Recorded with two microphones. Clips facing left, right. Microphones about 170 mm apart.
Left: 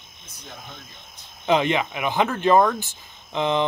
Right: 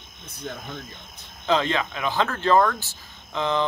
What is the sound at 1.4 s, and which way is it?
Speech, 15° left (ahead or behind).